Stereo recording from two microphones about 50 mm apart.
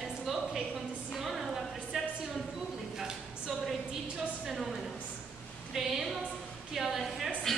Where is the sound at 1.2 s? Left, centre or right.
Centre.